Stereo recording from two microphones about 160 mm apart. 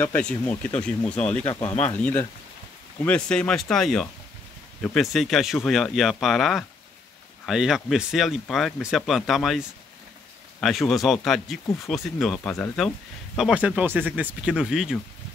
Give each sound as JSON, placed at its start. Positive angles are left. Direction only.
{"t": 0.0, "sound": "speech", "side_deg": 10}
{"t": 1.4, "sound": "speech", "side_deg": 30}
{"t": 1.9, "sound": "speech", "side_deg": 10}
{"t": 13.4, "sound": "speech", "side_deg": -5}